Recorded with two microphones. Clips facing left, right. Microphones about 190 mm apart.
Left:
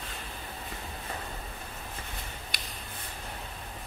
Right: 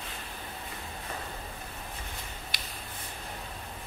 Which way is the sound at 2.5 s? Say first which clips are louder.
Even; 45° left (ahead or behind).